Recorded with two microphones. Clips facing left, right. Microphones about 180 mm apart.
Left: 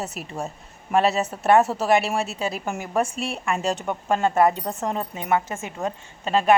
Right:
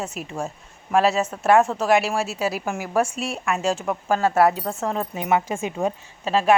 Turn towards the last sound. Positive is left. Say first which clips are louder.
# even
turn(degrees=0)  # may be behind; listen again after turning